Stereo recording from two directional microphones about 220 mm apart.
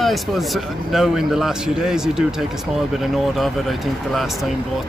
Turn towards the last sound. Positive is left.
turn(degrees=0)  # may be behind; listen again after turning